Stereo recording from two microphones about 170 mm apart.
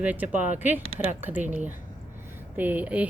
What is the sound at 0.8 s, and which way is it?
Speech, 35° left (ahead or behind).